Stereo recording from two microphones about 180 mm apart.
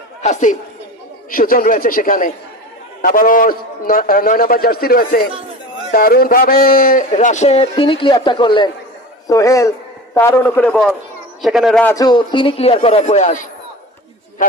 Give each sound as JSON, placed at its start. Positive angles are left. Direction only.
{"t": 0.2, "sound": "speech", "side_deg": 40}
{"t": 1.3, "sound": "a man's voice", "side_deg": 50}
{"t": 11.9, "sound": "a man's voice", "side_deg": 25}